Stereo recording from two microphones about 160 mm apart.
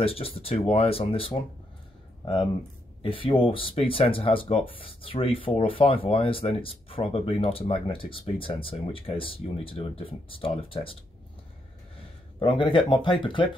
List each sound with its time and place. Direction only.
0.0 s speech: 35° left (ahead or behind)
3.0 s speech: 35° left (ahead or behind)
12.4 s speech: 30° left (ahead or behind)